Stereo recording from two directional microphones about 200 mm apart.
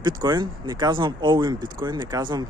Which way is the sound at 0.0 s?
20° right (ahead or behind).